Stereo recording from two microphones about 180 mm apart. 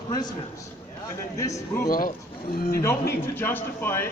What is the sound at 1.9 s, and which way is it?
Speech, 50° left (ahead or behind).